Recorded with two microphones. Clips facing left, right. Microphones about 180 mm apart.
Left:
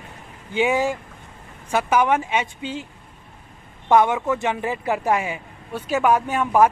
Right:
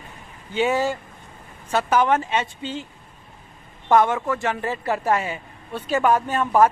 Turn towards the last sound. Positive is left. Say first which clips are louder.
# even
turn(degrees=10)  # may be behind; listen again after turning